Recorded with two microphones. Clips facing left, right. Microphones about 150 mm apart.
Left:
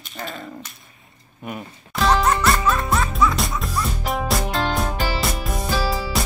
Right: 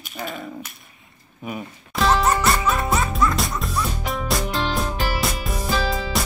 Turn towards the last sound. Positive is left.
turn(degrees=0)  # may be behind; listen again after turning